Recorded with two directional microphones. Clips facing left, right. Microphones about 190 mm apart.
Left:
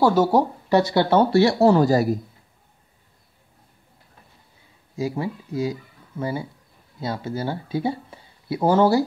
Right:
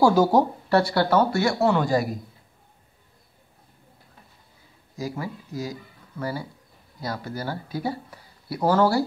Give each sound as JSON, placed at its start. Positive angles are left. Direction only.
{"t": 0.0, "sound": "speech", "side_deg": 5}
{"t": 4.9, "sound": "speech", "side_deg": 25}